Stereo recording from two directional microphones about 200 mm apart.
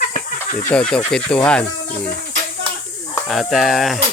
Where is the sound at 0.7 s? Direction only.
5° left (ahead or behind).